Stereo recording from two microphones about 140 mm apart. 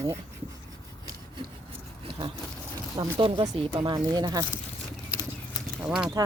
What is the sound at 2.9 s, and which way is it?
Speech, 20° right (ahead or behind).